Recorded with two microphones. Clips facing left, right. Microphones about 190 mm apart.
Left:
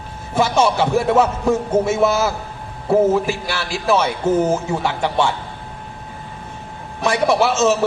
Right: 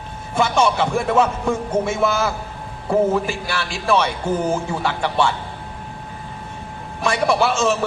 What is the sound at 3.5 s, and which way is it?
Music, 25° left (ahead or behind).